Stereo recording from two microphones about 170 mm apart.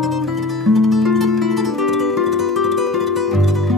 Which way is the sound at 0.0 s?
Centre (ahead or behind).